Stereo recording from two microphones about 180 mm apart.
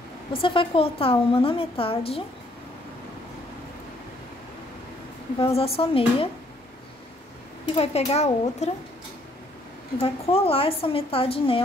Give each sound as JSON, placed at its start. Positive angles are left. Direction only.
{"t": 0.3, "sound": "a woman's voice", "side_deg": 30}
{"t": 5.4, "sound": "a woman's voice", "side_deg": 30}
{"t": 7.7, "sound": "a woman's voice", "side_deg": 35}
{"t": 9.9, "sound": "a woman's voice", "side_deg": 35}